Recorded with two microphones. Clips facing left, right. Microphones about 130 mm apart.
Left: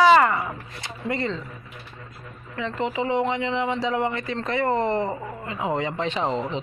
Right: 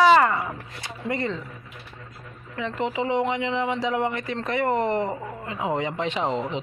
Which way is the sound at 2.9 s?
15° right (ahead or behind).